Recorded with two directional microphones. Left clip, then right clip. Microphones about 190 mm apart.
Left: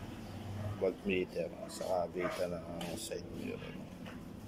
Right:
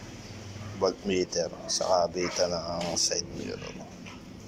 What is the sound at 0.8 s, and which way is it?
Speech, 5° left (ahead or behind).